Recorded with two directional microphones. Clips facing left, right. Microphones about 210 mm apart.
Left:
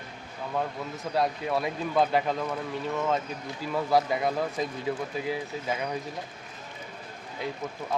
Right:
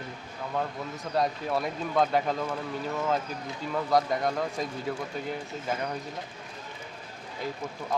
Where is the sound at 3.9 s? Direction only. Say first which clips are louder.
Left 1 dB; 5° left (ahead or behind).